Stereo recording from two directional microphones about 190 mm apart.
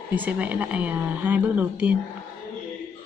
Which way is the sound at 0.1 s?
10° right (ahead or behind).